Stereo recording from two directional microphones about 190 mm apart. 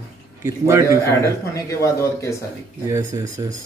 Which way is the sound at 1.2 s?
15° left (ahead or behind).